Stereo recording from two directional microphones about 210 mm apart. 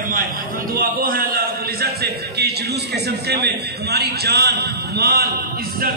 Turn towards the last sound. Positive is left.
turn(degrees=-45)  # may be behind; listen again after turning